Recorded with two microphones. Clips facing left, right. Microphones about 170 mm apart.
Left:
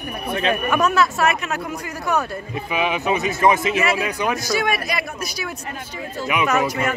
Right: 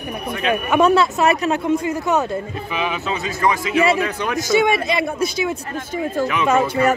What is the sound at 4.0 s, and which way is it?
Speech, 10° left (ahead or behind).